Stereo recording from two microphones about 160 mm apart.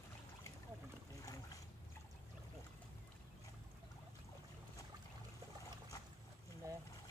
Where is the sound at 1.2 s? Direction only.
20° left (ahead or behind).